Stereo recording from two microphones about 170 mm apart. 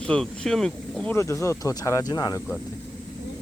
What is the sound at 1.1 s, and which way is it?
Speech, 15° left (ahead or behind).